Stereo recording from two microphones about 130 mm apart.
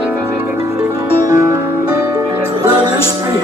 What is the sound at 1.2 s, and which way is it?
Music, 25° right (ahead or behind).